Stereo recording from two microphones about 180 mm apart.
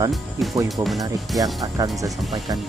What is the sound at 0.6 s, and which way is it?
Speech, centre (ahead or behind).